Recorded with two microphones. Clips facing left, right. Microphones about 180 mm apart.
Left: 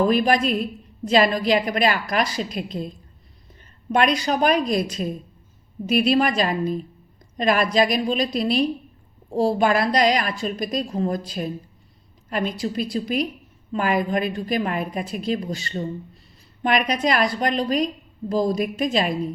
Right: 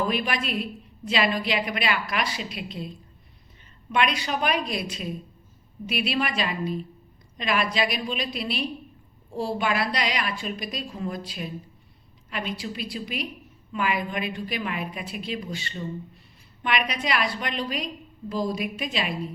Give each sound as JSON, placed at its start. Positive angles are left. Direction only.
{"t": 0.1, "sound": "a woman's voice", "side_deg": 40}
{"t": 3.9, "sound": "a woman's voice", "side_deg": 40}